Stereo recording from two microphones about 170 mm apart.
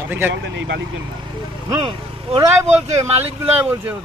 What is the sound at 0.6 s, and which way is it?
Speech, 90° right.